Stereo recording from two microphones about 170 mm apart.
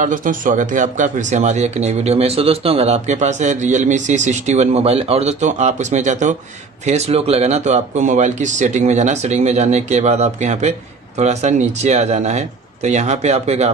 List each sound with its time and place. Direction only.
0.0 s speech: 50° right (ahead or behind)